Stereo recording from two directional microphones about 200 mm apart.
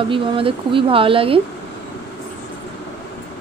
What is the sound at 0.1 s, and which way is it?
Speech, 25° right (ahead or behind).